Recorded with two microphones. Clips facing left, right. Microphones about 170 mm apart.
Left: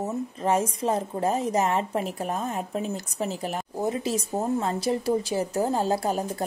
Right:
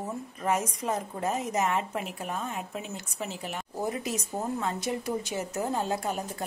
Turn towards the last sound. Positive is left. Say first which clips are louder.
# left 5 dB
turn(degrees=35)  # may be behind; listen again after turning